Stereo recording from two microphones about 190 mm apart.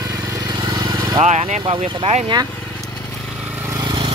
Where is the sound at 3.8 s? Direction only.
20° right (ahead or behind).